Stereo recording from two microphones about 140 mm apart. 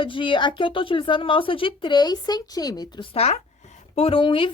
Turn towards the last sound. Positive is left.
turn(degrees=40)  # may be behind; listen again after turning